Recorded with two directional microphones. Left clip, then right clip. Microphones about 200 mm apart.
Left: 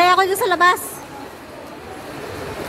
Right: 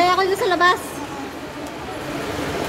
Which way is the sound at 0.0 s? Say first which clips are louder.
Left 3 dB; 20° left (ahead or behind).